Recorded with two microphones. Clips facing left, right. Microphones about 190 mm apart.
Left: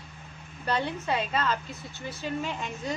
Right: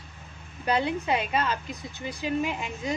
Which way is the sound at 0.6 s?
10° right (ahead or behind).